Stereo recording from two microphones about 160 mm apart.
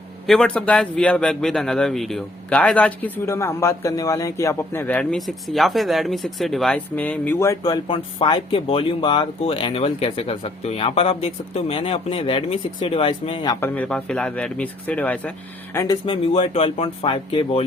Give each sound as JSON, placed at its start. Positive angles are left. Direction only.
{"t": 0.3, "sound": "a man's voice", "side_deg": 5}
{"t": 13.6, "sound": "a man's voice", "side_deg": 10}
{"t": 16.0, "sound": "speech", "side_deg": 35}